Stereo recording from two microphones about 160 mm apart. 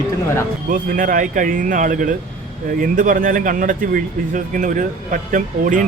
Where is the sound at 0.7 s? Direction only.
60° right (ahead or behind).